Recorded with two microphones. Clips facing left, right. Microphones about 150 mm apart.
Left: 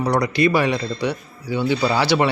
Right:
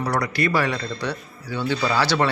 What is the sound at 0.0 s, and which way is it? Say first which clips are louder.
Speech: left 5 dB; 15° left (ahead or behind).